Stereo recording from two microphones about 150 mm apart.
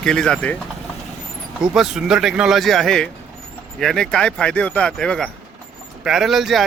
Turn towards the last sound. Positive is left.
turn(degrees=0)  # may be behind; listen again after turning